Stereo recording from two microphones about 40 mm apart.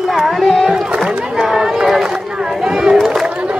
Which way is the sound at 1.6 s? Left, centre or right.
Centre.